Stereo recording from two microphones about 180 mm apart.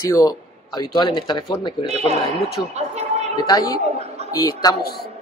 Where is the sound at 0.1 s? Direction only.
20° left (ahead or behind).